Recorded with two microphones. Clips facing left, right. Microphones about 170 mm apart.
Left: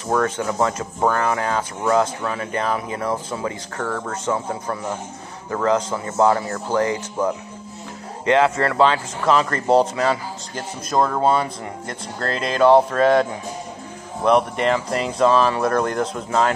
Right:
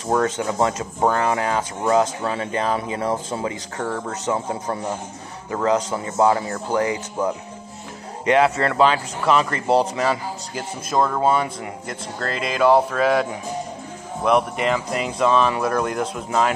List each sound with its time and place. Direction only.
0.1 s speech: 25° right (ahead or behind)
2.2 s speech: 25° right (ahead or behind)
8.3 s speech: 20° right (ahead or behind)